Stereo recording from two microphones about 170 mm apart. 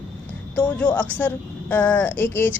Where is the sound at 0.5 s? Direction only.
10° left (ahead or behind).